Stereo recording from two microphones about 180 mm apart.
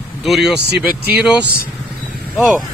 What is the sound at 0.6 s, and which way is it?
Speech, 65° right (ahead or behind).